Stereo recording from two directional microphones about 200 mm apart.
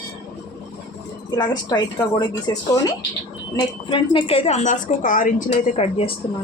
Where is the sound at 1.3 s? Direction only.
20° left (ahead or behind).